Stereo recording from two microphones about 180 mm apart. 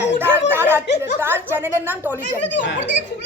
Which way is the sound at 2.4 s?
80° left.